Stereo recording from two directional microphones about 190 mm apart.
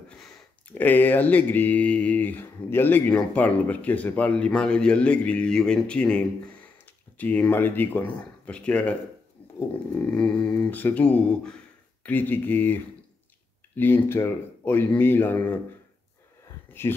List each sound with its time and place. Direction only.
0.2 s speech: 10° left (ahead or behind)
9.4 s a sound: 30° left (ahead or behind)
9.9 s speech: 5° left (ahead or behind)
16.8 s speech: 10° left (ahead or behind)